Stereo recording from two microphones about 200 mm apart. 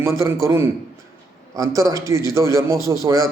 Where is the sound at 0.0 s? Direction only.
15° right (ahead or behind).